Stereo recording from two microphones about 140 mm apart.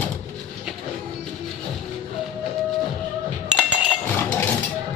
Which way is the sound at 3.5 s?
5° right (ahead or behind).